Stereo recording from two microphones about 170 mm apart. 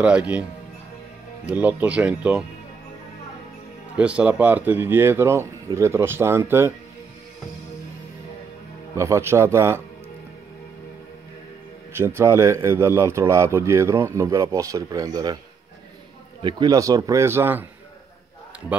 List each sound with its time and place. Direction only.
0.0 s speech: 5° right (ahead or behind)
1.4 s speech: 10° right (ahead or behind)
4.0 s speech: 5° right (ahead or behind)
8.9 s speech: 15° right (ahead or behind)
11.9 s speech: 15° right (ahead or behind)
16.4 s speech: 25° right (ahead or behind)